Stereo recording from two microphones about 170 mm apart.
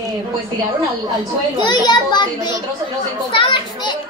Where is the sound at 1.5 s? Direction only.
25° left (ahead or behind).